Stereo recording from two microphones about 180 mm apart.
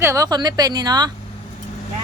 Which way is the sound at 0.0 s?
15° right (ahead or behind).